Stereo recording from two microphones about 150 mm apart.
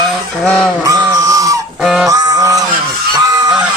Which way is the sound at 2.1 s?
25° right (ahead or behind).